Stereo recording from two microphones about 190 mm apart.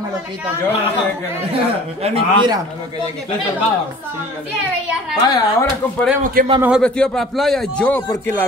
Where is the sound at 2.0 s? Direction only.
30° right (ahead or behind).